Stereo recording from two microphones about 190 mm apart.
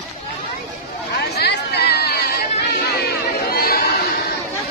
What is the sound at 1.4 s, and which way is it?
Chatter, 60° left (ahead or behind).